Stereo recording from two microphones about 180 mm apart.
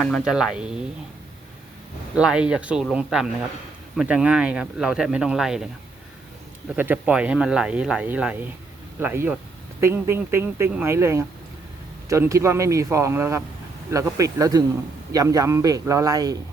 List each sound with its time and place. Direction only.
0.0 s speech: centre (ahead or behind)
2.1 s speech: 5° right (ahead or behind)
6.7 s speech: 10° right (ahead or behind)